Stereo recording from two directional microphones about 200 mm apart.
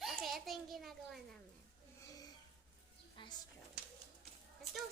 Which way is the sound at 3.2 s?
25° left (ahead or behind).